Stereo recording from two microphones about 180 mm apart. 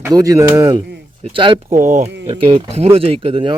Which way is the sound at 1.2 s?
30° right (ahead or behind).